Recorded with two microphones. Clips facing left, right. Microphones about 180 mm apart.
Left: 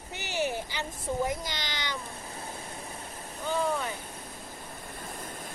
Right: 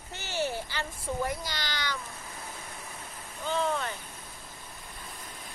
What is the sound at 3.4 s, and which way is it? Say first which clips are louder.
Speech: even; 10° left (ahead or behind).